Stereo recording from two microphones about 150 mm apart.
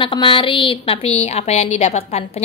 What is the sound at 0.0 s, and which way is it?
A woman's voice, 35° left (ahead or behind).